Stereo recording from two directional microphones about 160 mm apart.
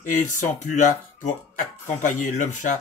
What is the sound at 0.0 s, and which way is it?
Speech, 50° left (ahead or behind).